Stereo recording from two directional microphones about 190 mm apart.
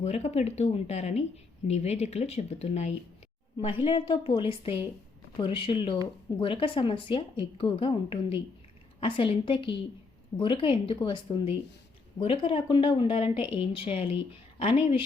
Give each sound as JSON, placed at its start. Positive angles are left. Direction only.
{"t": 0.0, "sound": "a woman's voice", "side_deg": 35}